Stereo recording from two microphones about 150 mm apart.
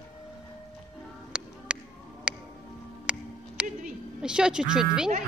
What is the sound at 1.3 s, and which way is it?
Music, 5° right (ahead or behind).